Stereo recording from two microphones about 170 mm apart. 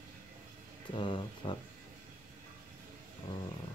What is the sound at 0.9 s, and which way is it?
Speech, 30° left (ahead or behind).